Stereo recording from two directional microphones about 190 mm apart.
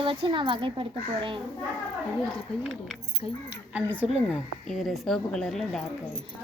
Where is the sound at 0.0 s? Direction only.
25° right (ahead or behind).